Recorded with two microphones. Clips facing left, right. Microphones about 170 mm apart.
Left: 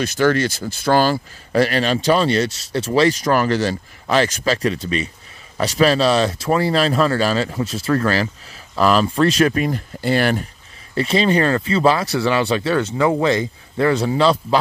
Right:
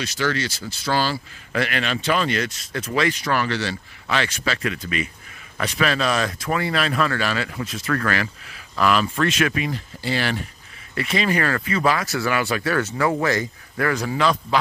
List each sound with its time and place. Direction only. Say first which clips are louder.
0.0 s speech: left 7 dB; 50° left (ahead or behind)
1.5 s speech: left 7 dB; 35° left (ahead or behind); by 10.4 s 50° left (ahead or behind)
11.0 s speech: left 5 dB; 30° left (ahead or behind)